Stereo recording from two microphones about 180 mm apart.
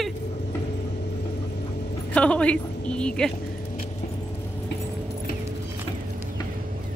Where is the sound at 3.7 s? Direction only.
45° left (ahead or behind).